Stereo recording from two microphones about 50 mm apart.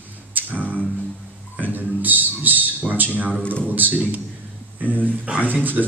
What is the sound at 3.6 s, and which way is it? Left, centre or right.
A man's voice, right.